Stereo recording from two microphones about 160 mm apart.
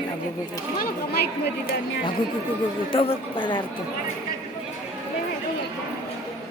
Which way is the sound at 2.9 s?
35° left (ahead or behind).